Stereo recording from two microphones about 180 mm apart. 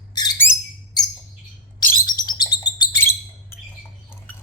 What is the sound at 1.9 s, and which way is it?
Bird, 25° left (ahead or behind).